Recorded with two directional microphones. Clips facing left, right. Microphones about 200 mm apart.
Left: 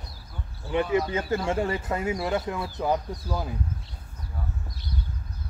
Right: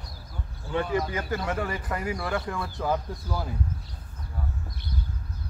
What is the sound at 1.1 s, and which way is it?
Speech, 25° left (ahead or behind).